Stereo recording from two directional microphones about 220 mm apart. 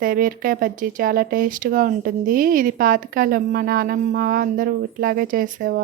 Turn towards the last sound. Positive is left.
turn(degrees=-40)  # may be behind; listen again after turning